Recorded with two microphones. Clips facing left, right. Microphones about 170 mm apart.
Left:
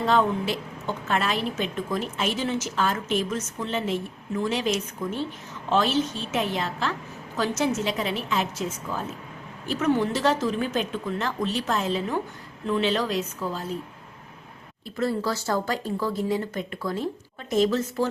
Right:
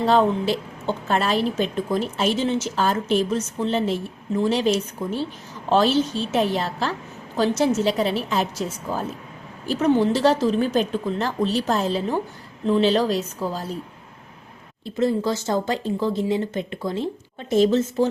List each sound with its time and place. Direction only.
0.0 s a woman's voice: 30° right (ahead or behind)
14.9 s speech: 20° right (ahead or behind)